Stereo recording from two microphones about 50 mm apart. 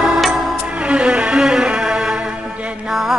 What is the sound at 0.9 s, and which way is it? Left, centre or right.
Music, centre.